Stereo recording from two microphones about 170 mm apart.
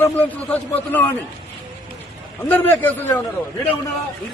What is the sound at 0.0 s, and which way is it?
A man's voice, 10° left (ahead or behind).